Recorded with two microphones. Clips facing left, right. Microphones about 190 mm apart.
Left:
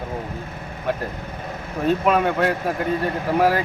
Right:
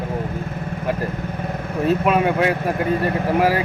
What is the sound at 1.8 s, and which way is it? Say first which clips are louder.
Speech: right 1 dB; 5° right (ahead or behind).